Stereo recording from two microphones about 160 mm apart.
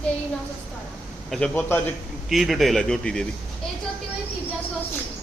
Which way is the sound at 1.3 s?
5° left (ahead or behind).